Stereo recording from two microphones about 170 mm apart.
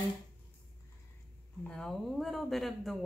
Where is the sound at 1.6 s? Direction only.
5° left (ahead or behind).